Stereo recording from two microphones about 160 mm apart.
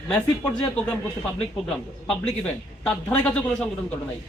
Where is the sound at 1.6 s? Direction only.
5° left (ahead or behind).